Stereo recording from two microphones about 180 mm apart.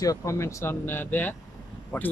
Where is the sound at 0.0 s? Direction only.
20° left (ahead or behind).